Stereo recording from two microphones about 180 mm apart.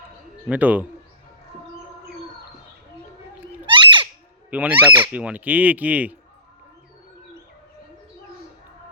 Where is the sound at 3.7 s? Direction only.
25° right (ahead or behind).